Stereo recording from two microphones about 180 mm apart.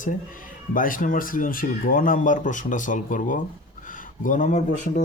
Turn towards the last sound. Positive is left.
turn(degrees=40)  # may be behind; listen again after turning